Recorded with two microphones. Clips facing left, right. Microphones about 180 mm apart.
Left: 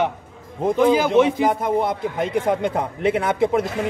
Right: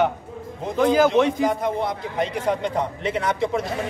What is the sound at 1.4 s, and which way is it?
A man's voice, 55° left (ahead or behind).